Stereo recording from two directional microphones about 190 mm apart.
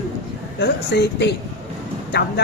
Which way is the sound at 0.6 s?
60° left (ahead or behind).